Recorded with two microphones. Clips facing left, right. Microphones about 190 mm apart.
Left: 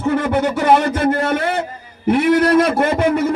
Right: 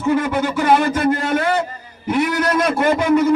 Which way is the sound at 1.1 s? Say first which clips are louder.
Even; 65° left (ahead or behind).